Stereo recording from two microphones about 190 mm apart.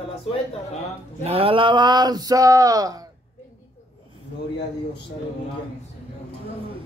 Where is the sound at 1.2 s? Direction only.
30° right (ahead or behind).